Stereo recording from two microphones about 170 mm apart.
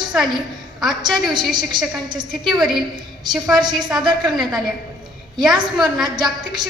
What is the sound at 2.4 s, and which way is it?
Speech, centre (ahead or behind).